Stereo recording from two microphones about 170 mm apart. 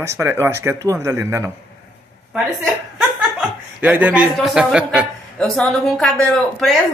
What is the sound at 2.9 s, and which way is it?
Chuckle, 5° right (ahead or behind).